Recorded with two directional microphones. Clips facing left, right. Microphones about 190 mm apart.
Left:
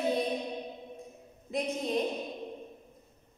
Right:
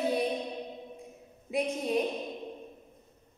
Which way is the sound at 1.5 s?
10° right (ahead or behind).